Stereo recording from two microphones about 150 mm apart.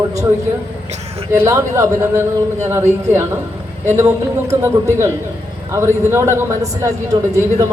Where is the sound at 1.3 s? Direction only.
20° right (ahead or behind).